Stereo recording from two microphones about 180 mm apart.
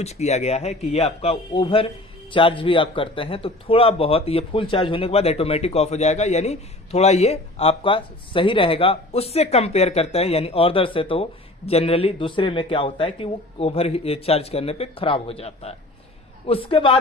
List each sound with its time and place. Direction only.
0.0 s speech: 35° left (ahead or behind)